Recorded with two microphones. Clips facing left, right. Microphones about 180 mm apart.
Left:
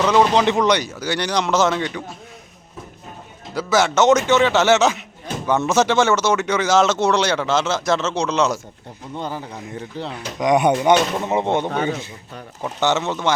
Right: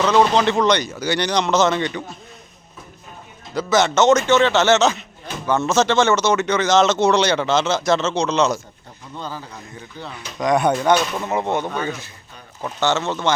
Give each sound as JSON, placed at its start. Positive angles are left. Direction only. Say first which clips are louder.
{"t": 0.3, "sound": "speech", "louder": "even", "side_deg": 15}
{"t": 3.5, "sound": "a man's voice", "louder": "right 1 dB", "side_deg": 5}
{"t": 9.1, "sound": "a man's voice", "louder": "left 3 dB", "side_deg": 20}